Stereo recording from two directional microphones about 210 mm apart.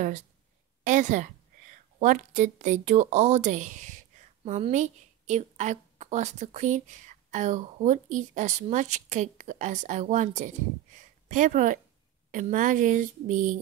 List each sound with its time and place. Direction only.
0.8 s a woman's voice: 35° right (ahead or behind)